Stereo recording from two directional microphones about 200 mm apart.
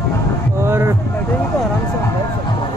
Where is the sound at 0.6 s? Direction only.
10° right (ahead or behind).